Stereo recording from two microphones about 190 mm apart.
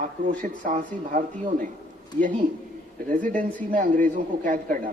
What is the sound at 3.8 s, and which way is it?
A man's voice, 45° right (ahead or behind).